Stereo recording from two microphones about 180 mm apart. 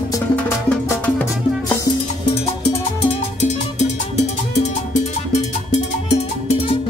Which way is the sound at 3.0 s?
40° left (ahead or behind).